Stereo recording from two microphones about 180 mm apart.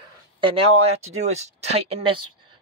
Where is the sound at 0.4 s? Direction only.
30° right (ahead or behind).